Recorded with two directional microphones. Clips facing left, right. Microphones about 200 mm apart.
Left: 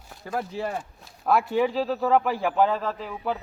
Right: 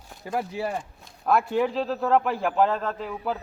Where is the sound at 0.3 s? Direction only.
10° right (ahead or behind).